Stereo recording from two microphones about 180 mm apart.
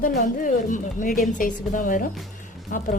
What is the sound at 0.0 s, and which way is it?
A woman's voice, 55° left (ahead or behind).